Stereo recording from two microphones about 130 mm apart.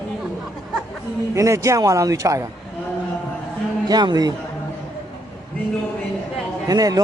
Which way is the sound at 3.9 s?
30° right (ahead or behind).